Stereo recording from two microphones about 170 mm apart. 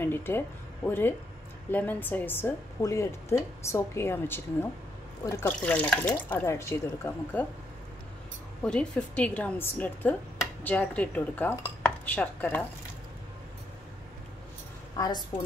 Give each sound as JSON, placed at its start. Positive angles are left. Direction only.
{"t": 0.0, "sound": "a woman's voice", "side_deg": 15}
{"t": 8.6, "sound": "a woman's voice", "side_deg": 5}
{"t": 15.0, "sound": "a woman's voice", "side_deg": 25}